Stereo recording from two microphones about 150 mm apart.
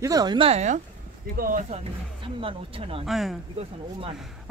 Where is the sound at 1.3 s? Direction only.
75° right (ahead or behind).